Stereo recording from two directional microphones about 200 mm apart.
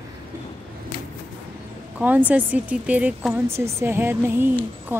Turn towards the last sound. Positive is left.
turn(degrees=-10)  # may be behind; listen again after turning